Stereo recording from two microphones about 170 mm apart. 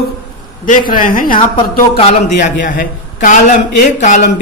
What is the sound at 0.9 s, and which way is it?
Speech, 55° left (ahead or behind).